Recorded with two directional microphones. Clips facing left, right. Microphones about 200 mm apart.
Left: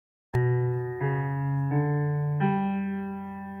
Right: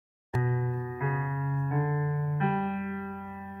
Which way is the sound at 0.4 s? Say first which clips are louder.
Left 5 dB; 20° left (ahead or behind).